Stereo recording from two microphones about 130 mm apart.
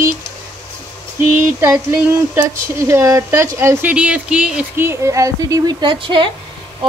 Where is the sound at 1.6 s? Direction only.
10° right (ahead or behind).